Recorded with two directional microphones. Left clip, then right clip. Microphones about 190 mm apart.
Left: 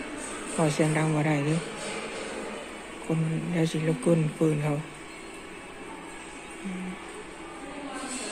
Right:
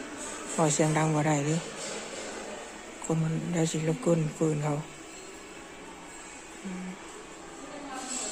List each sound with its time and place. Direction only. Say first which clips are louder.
0.6 s a woman's voice: even; 20° right (ahead or behind)
3.1 s speech: left 1 dB; 20° right (ahead or behind)